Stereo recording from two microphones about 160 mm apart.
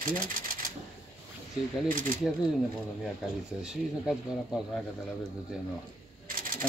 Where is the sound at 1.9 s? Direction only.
60° right (ahead or behind).